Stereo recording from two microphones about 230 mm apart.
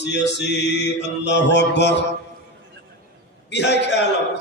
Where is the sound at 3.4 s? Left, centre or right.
Left.